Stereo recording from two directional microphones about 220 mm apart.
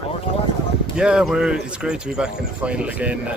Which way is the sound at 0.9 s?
5° right (ahead or behind).